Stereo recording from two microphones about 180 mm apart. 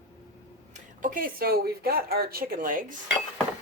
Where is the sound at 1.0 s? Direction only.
50° right (ahead or behind).